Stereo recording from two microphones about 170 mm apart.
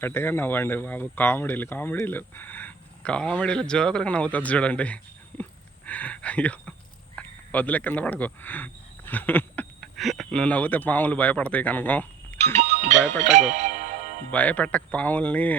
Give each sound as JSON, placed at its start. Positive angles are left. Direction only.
{"t": 0.0, "sound": "speech", "side_deg": 15}
{"t": 5.4, "sound": "a sound", "side_deg": 10}
{"t": 7.2, "sound": "speech", "side_deg": 10}
{"t": 12.6, "sound": "music", "side_deg": -40}
{"t": 14.3, "sound": "speech", "side_deg": 10}